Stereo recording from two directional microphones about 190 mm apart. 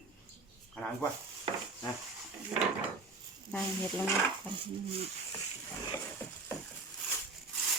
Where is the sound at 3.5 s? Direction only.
5° left (ahead or behind).